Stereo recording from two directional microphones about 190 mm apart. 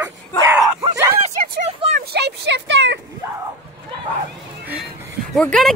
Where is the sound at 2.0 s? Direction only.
60° right (ahead or behind).